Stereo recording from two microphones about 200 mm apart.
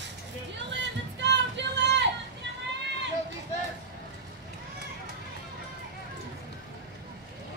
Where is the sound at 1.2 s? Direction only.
60° right (ahead or behind).